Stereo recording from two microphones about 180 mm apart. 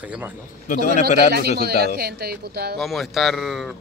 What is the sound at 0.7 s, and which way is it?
Speech, 45° left (ahead or behind).